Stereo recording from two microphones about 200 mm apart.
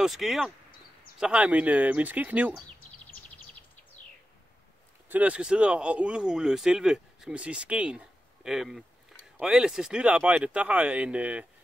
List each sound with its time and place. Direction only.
0.0 s speech: centre (ahead or behind)
5.1 s speech: 5° right (ahead or behind)